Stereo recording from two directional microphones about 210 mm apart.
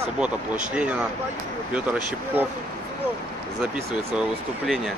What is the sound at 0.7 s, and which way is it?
Speech, 5° right (ahead or behind).